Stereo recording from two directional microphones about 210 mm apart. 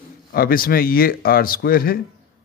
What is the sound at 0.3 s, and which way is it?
Speech, 45° left (ahead or behind).